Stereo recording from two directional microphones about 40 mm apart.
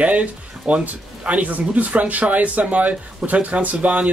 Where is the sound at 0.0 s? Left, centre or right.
Right.